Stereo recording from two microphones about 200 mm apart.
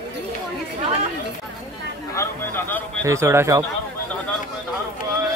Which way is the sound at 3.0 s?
15° right (ahead or behind).